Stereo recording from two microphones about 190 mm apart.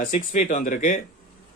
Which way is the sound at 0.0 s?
40° left (ahead or behind).